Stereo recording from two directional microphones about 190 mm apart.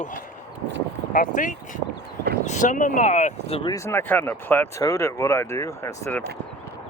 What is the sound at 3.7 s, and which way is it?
Speech, 15° left (ahead or behind).